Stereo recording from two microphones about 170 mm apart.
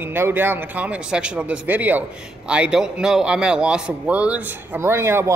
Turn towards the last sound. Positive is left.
turn(degrees=-15)  # may be behind; listen again after turning